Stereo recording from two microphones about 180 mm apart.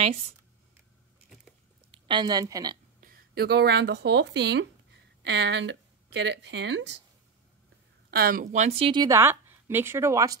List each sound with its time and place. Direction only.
2.0 s speech: 25° right (ahead or behind)
3.0 s speech: 60° right (ahead or behind); by 7.0 s 80° right
8.1 s speech: 55° right (ahead or behind); by 10.3 s 15° right (ahead or behind)